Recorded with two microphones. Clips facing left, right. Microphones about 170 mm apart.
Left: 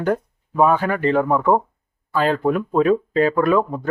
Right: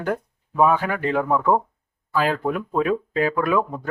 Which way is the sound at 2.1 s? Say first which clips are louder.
Left 3 dB; 5° right (ahead or behind).